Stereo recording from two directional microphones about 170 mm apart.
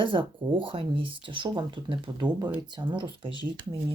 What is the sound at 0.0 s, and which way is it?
Speech, 30° right (ahead or behind).